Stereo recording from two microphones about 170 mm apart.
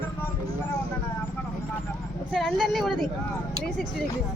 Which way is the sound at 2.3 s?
Centre (ahead or behind).